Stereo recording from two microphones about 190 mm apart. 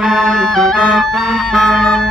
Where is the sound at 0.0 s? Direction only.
Centre (ahead or behind).